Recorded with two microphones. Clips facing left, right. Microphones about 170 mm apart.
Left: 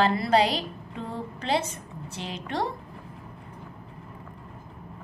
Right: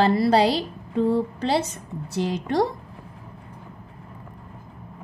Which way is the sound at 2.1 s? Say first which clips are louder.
Right 9 dB; 40° right (ahead or behind).